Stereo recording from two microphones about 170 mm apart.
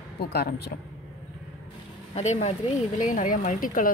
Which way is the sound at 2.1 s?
40° left (ahead or behind).